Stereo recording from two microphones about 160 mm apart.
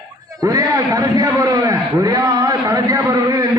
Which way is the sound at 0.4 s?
20° right (ahead or behind).